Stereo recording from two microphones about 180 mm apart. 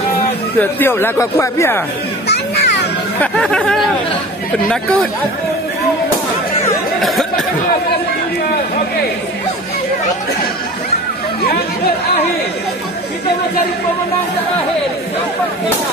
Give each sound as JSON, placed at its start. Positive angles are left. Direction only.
{"t": 0.6, "sound": "speech", "side_deg": 10}
{"t": 2.2, "sound": "music", "side_deg": 70}
{"t": 3.2, "sound": "speech", "side_deg": 5}
{"t": 7.0, "sound": "a sound", "side_deg": 0}